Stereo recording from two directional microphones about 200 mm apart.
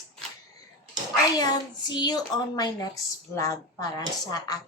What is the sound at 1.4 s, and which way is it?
A woman's voice, 20° left (ahead or behind).